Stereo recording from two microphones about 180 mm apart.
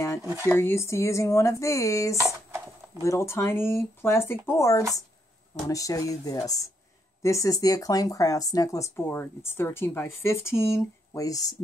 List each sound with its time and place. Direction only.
0.2 s speech: 15° right (ahead or behind)
0.5 s speech: 15° left (ahead or behind)
2.2 s a sound: 15° right (ahead or behind)
3.0 s speech: 15° left (ahead or behind)